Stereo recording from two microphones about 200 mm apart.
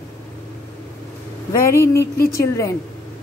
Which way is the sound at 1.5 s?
15° left (ahead or behind).